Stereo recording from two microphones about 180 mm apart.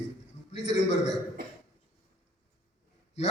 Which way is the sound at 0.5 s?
40° left (ahead or behind).